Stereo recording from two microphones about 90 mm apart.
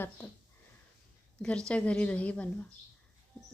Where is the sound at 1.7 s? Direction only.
10° left (ahead or behind).